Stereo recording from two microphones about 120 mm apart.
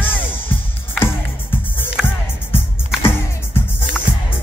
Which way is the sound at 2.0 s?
Centre (ahead or behind).